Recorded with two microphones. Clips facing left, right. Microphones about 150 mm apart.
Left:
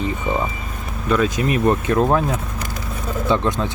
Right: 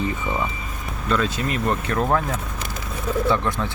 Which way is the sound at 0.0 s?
20° left (ahead or behind).